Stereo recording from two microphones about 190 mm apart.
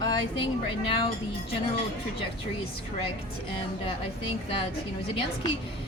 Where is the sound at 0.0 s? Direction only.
20° left (ahead or behind).